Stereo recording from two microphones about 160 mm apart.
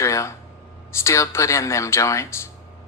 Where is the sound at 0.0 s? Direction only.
20° left (ahead or behind).